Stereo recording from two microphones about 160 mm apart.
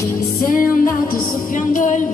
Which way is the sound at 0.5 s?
60° left (ahead or behind).